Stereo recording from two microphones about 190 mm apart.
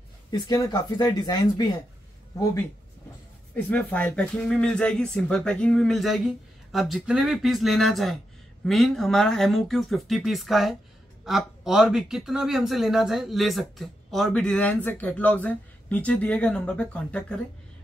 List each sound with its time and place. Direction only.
0.3 s speech: 20° left (ahead or behind)
3.5 s speech: 10° left (ahead or behind)